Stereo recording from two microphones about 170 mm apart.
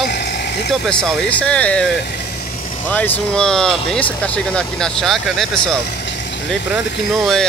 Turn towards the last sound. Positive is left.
turn(degrees=-5)  # may be behind; listen again after turning